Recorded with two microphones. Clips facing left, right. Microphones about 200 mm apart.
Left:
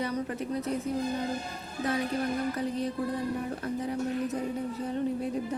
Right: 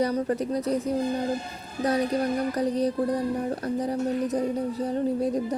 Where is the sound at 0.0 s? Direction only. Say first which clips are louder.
Right 7 dB; 35° right (ahead or behind).